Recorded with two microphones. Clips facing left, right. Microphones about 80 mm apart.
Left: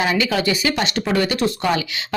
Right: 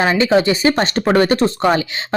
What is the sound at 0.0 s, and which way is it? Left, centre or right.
Speech, right.